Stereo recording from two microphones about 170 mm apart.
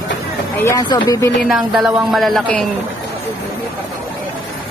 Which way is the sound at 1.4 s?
Centre (ahead or behind).